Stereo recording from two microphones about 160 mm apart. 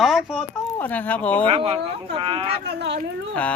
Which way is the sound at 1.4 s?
35° right (ahead or behind).